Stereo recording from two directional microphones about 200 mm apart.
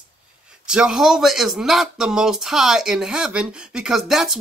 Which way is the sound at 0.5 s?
5° right (ahead or behind).